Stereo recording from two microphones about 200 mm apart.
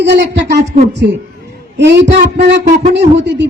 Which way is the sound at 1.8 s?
55° right (ahead or behind).